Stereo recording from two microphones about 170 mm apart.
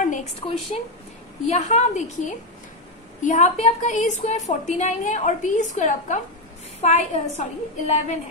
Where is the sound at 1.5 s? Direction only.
40° left (ahead or behind).